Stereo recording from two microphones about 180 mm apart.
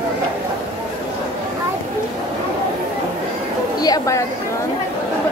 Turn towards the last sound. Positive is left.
turn(degrees=20)  # may be behind; listen again after turning